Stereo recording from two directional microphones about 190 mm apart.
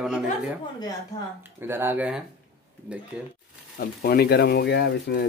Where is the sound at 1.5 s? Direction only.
10° right (ahead or behind).